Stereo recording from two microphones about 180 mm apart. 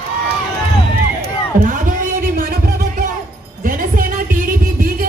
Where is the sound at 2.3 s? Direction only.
55° right (ahead or behind).